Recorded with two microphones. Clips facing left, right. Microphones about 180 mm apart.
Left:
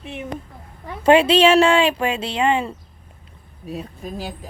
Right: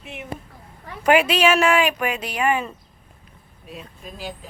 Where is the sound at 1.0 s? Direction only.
30° left (ahead or behind).